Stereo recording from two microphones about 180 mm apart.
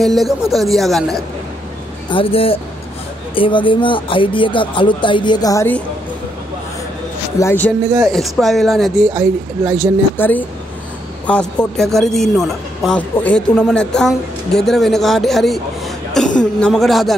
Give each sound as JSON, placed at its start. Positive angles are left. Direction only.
{"t": 0.0, "sound": "a woman's voice", "side_deg": 0}
{"t": 2.0, "sound": "speech", "side_deg": 30}
{"t": 7.3, "sound": "a woman's voice", "side_deg": 10}
{"t": 10.1, "sound": "a woman's voice", "side_deg": 10}
{"t": 16.2, "sound": "cough", "side_deg": 5}
{"t": 16.6, "sound": "a woman's voice", "side_deg": 0}